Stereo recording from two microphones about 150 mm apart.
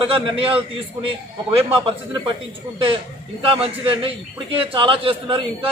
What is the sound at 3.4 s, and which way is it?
A man's voice, 35° right (ahead or behind).